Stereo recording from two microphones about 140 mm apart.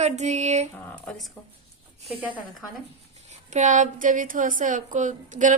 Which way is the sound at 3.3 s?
60° right (ahead or behind).